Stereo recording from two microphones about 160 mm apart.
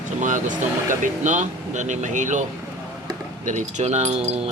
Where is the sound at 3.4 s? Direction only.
45° right (ahead or behind).